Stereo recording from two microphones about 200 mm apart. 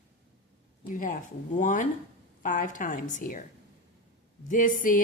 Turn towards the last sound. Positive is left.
turn(degrees=40)  # may be behind; listen again after turning